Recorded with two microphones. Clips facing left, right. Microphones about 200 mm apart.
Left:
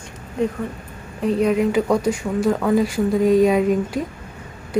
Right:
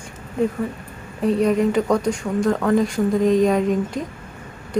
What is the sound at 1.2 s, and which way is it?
Speech, centre (ahead or behind).